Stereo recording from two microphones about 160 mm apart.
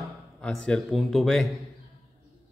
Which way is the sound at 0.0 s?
5° left (ahead or behind).